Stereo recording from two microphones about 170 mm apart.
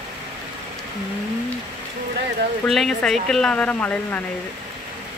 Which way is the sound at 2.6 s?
Centre (ahead or behind).